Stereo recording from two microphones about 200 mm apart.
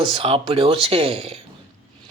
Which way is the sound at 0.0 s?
25° right (ahead or behind).